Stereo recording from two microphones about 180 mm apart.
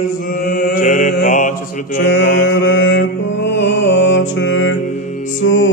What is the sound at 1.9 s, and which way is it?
Mantra, 90° left.